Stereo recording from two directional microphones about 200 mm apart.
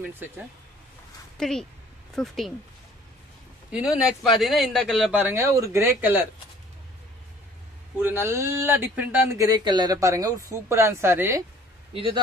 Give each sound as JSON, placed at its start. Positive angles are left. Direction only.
{"t": 1.4, "sound": "speech", "side_deg": 0}
{"t": 3.7, "sound": "speech", "side_deg": 0}
{"t": 8.0, "sound": "speech", "side_deg": -10}
{"t": 11.9, "sound": "speech", "side_deg": -25}